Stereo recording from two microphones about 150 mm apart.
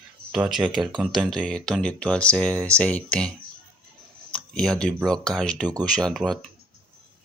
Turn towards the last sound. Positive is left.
turn(degrees=0)  # may be behind; listen again after turning